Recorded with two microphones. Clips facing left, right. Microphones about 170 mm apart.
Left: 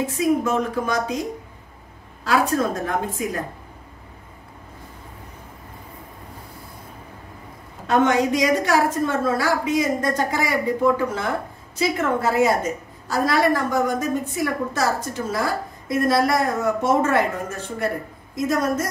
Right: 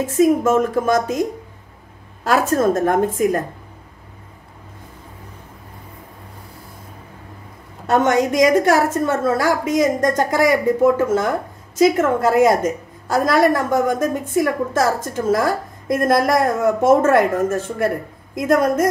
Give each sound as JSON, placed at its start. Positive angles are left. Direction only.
{"t": 0.0, "sound": "a woman's voice", "side_deg": -45}
{"t": 2.2, "sound": "a woman's voice", "side_deg": -45}
{"t": 7.8, "sound": "a woman's voice", "side_deg": -45}